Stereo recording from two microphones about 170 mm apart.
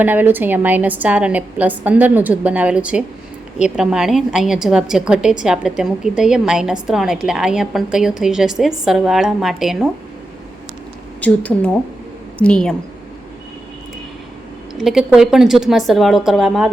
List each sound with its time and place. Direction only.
0.0 s a woman's voice: 10° right (ahead or behind)
11.2 s a woman's voice: 5° left (ahead or behind)
14.8 s a woman's voice: centre (ahead or behind)